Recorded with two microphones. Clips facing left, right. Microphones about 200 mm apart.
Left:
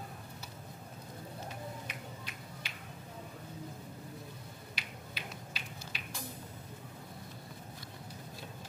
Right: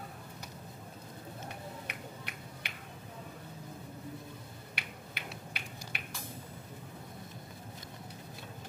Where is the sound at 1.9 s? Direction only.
60° right (ahead or behind).